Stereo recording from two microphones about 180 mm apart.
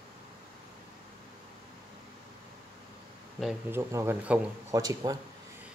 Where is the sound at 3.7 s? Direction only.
15° right (ahead or behind).